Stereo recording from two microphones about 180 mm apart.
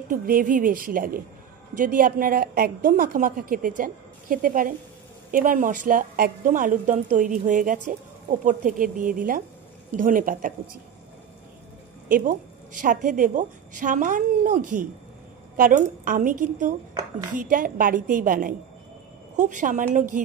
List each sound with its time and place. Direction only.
0.1 s a woman's voice: 50° right (ahead or behind)
12.1 s a woman's voice: 50° right (ahead or behind)